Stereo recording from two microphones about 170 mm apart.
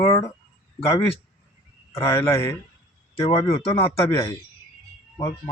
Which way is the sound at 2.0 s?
15° left (ahead or behind).